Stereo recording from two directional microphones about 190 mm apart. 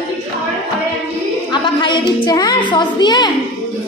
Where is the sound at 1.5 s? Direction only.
25° left (ahead or behind).